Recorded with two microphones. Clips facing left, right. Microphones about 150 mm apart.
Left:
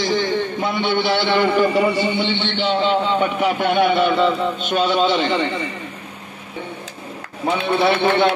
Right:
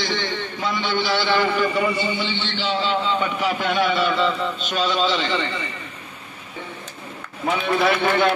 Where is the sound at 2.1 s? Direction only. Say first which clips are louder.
Left 5 dB; 65° left (ahead or behind).